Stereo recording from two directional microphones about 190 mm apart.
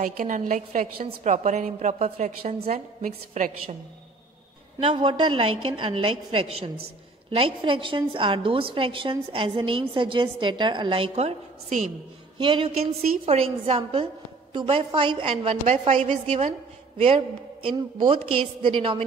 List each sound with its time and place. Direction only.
0.0 s a woman's voice: 45° right (ahead or behind)
4.8 s a woman's voice: 25° right (ahead or behind)